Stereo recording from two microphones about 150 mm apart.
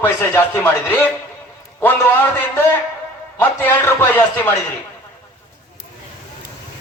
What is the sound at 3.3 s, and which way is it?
Speech, 10° left (ahead or behind).